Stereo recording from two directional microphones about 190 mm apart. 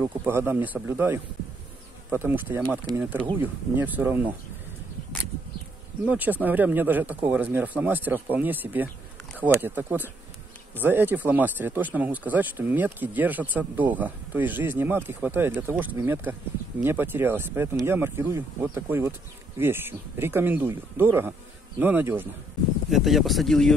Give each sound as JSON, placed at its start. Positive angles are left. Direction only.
{"t": 0.0, "sound": "speech", "side_deg": -10}
{"t": 6.0, "sound": "speech", "side_deg": -10}